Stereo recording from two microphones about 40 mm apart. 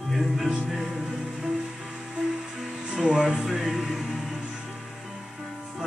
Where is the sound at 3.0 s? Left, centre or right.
Centre.